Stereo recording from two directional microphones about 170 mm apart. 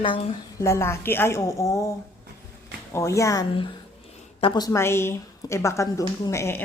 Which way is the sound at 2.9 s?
15° left (ahead or behind).